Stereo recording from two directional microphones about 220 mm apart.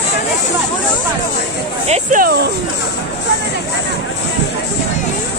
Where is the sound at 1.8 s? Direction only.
35° right (ahead or behind).